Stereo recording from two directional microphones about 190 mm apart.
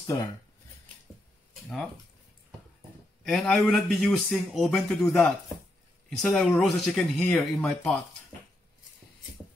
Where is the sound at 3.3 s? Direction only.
Centre (ahead or behind).